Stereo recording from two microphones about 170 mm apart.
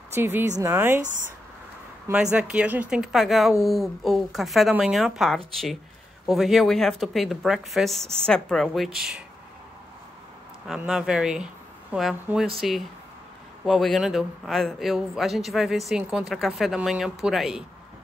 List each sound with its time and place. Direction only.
0.1 s speech: 10° right (ahead or behind)
1.0 s speech: 50° right (ahead or behind)
2.3 s a man's voice: 5° right (ahead or behind)
10.7 s a man's voice: 5° right (ahead or behind)